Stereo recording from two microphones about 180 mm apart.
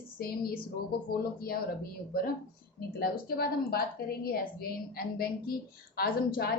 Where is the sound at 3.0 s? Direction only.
60° left (ahead or behind).